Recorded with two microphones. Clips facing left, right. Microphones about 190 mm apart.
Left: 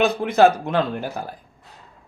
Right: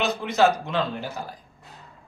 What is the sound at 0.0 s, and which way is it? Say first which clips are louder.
A man's voice: left 5 dB; 55° left (ahead or behind).